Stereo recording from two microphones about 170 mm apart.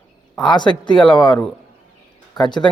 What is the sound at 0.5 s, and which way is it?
Speech, 25° left (ahead or behind).